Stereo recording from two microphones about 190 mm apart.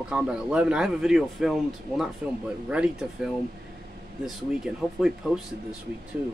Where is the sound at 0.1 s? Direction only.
5° right (ahead or behind).